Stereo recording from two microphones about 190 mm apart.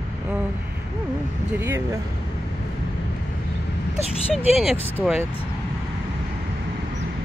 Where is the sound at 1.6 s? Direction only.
15° right (ahead or behind).